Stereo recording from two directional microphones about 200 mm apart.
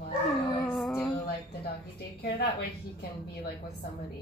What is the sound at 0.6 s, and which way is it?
Music, 5° left (ahead or behind).